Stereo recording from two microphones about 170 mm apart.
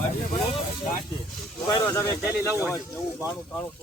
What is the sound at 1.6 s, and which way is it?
Speech, 25° left (ahead or behind).